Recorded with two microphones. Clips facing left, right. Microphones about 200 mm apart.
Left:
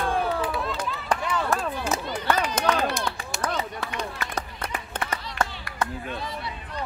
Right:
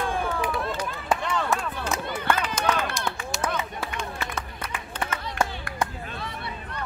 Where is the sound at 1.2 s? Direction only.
10° left (ahead or behind).